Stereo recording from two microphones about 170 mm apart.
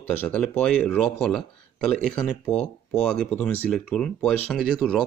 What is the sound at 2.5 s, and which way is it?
Speech, 40° left (ahead or behind).